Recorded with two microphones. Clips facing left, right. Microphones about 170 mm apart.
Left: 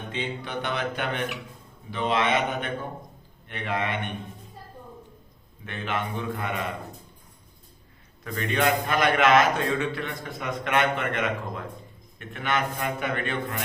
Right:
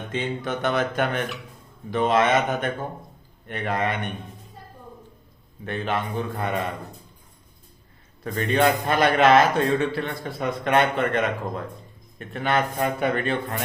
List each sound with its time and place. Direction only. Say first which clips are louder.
0.1 s mantra: right 5 dB; 45° right (ahead or behind)
5.6 s a man's voice: right 4 dB; 35° right (ahead or behind)
8.2 s a man's voice: right 4 dB; 35° right (ahead or behind)